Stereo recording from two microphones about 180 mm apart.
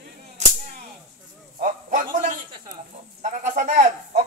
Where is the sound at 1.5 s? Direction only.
45° right (ahead or behind).